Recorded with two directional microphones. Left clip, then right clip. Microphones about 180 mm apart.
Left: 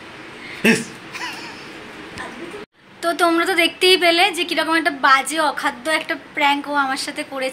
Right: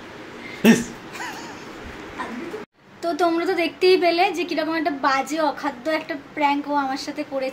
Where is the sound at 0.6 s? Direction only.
15° right (ahead or behind).